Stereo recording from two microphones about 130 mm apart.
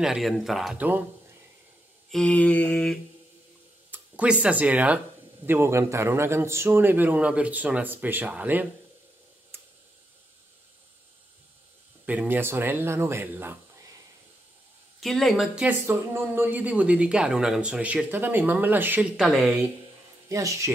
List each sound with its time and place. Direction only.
0.0 s speech: centre (ahead or behind)
0.7 s speech: 15° right (ahead or behind)
2.0 s mantra: 5° left (ahead or behind)
3.9 s speech: 10° right (ahead or behind)
9.5 s tick: 15° right (ahead or behind)
12.1 s speech: 15° right (ahead or behind)
15.0 s speech: centre (ahead or behind)
15.9 s speech: 20° right (ahead or behind); by 19.6 s centre (ahead or behind)
20.2 s speech: 25° right (ahead or behind)